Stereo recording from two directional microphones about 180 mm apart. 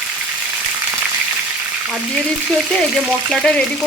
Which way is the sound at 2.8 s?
Centre (ahead or behind).